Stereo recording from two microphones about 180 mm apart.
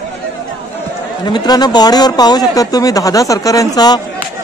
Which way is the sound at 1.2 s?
25° left (ahead or behind).